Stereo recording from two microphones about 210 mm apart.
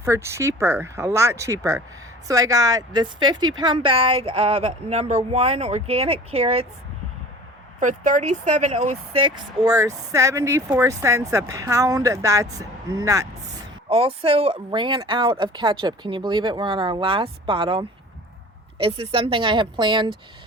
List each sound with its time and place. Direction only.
0.0 s speech: 10° right (ahead or behind); by 6.7 s 30° right (ahead or behind)
7.8 s speech: 35° right (ahead or behind)
9.1 s speech: 20° right (ahead or behind)
13.9 s speech: 25° right (ahead or behind)